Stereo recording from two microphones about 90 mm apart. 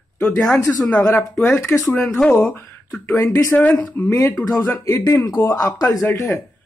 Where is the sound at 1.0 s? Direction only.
30° left (ahead or behind).